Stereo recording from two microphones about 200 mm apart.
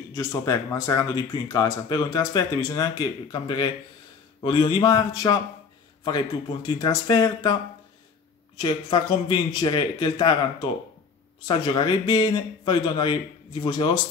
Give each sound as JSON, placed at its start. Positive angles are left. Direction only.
{"t": 0.1, "sound": "speech", "side_deg": 15}
{"t": 8.5, "sound": "speech", "side_deg": 20}
{"t": 11.4, "sound": "speech", "side_deg": 20}